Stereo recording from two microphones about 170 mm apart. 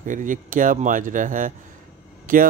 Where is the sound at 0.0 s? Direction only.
50° right (ahead or behind).